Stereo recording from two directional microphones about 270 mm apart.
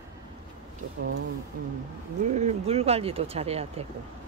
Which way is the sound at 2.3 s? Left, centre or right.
Right.